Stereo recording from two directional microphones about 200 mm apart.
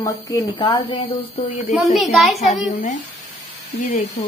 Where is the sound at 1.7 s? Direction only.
Centre (ahead or behind).